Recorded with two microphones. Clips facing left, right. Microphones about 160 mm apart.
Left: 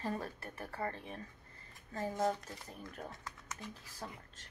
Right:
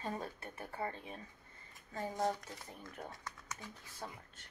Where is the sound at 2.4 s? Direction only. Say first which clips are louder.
Left 2 dB; 20° right (ahead or behind).